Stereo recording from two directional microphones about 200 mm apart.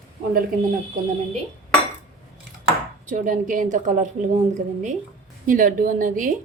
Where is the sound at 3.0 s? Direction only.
40° right (ahead or behind).